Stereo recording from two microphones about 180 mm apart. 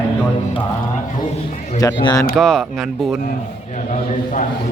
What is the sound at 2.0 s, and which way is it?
Speech, 20° left (ahead or behind).